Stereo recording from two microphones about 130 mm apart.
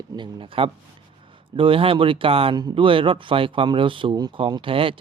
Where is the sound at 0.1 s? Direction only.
40° right (ahead or behind).